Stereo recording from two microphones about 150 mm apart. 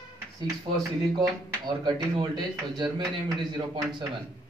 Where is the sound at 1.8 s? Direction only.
30° right (ahead or behind).